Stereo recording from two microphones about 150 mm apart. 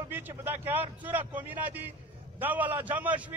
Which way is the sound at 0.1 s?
15° right (ahead or behind).